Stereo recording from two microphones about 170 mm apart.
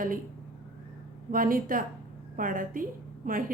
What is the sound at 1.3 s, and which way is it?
A woman's voice, 55° right (ahead or behind).